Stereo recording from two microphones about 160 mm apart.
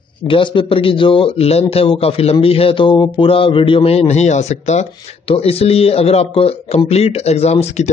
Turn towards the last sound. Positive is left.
turn(degrees=45)  # may be behind; listen again after turning